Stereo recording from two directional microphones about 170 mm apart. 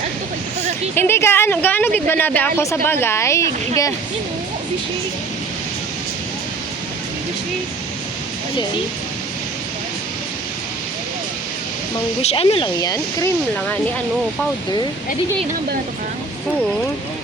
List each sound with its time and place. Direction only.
0.9 s a woman's voice: 15° left (ahead or behind)
12.2 s speech: 35° left (ahead or behind)